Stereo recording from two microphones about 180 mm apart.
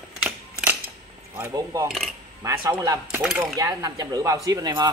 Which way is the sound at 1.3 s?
15° right (ahead or behind).